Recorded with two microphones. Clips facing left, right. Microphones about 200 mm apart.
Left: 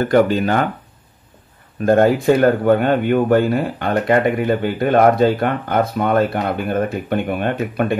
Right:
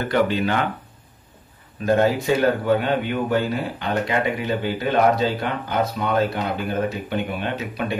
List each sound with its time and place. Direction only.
0.0 s speech: 45° left (ahead or behind)
1.9 s speech: 50° left (ahead or behind)